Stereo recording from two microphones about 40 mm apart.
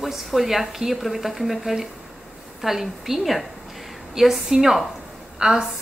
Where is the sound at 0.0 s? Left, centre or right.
Centre.